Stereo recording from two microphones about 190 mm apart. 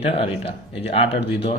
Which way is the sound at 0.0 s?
30° left (ahead or behind).